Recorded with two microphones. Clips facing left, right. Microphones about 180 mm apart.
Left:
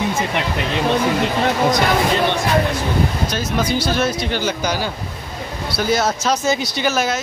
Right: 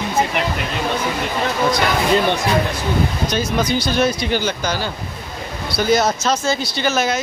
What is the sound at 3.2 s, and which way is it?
Speech, 5° left (ahead or behind).